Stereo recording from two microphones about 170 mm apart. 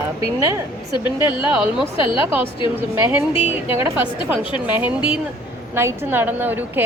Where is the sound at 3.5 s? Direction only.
15° right (ahead or behind).